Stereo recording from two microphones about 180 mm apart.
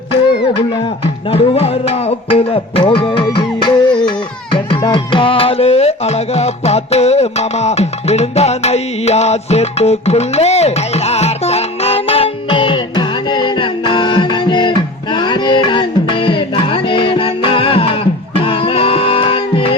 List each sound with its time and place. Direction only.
1.3 s music: 35° left (ahead or behind)